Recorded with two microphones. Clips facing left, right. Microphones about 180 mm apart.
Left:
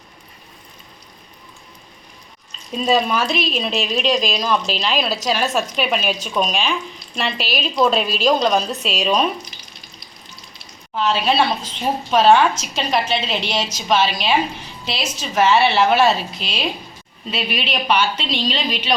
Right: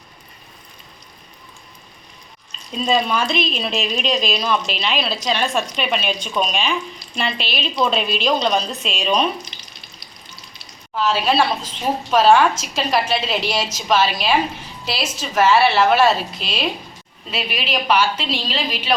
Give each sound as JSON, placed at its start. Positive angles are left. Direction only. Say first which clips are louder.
{"t": 2.7, "sound": "speech", "louder": "left 1 dB", "side_deg": 5}
{"t": 10.9, "sound": "speech", "louder": "even", "side_deg": 0}